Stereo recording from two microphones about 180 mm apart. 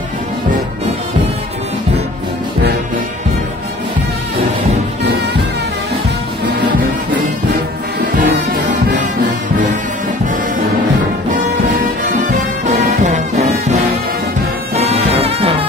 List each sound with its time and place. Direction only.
13.0 s music: 40° right (ahead or behind)
14.8 s music: 35° right (ahead or behind)